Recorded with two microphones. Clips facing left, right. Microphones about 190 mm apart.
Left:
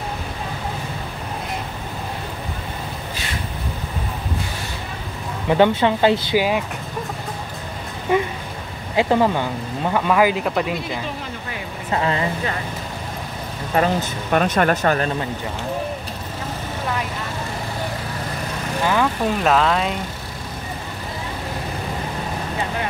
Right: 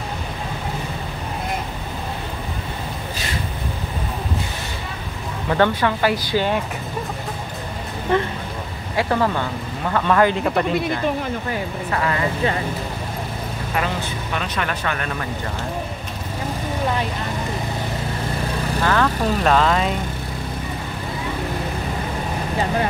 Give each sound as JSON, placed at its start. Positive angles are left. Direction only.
{"t": 5.5, "sound": "a woman's voice", "side_deg": 20}
{"t": 6.3, "sound": "speech", "side_deg": 5}
{"t": 8.1, "sound": "speech", "side_deg": 10}
{"t": 11.9, "sound": "a woman's voice", "side_deg": 25}
{"t": 13.7, "sound": "speech", "side_deg": 45}
{"t": 18.8, "sound": "speech", "side_deg": 10}
{"t": 19.4, "sound": "speech", "side_deg": 0}